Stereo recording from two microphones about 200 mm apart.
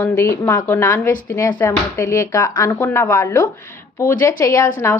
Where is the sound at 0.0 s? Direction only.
10° left (ahead or behind).